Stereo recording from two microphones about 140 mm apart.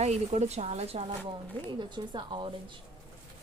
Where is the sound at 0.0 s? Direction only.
50° right (ahead or behind).